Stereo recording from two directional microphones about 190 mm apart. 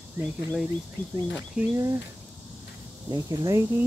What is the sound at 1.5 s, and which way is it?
Speech, 15° right (ahead or behind).